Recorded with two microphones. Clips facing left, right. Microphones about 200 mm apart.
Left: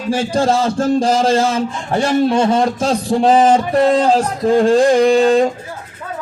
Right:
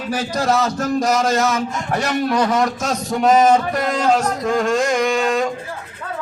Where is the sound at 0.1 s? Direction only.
30° left (ahead or behind).